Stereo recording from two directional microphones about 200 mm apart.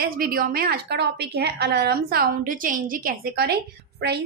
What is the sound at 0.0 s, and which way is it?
A woman's voice, 45° right (ahead or behind).